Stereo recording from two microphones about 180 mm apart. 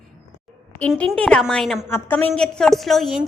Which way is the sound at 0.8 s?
5° left (ahead or behind).